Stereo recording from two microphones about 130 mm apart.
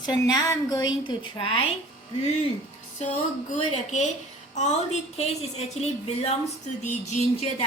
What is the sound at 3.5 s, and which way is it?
A woman's voice, 65° left (ahead or behind).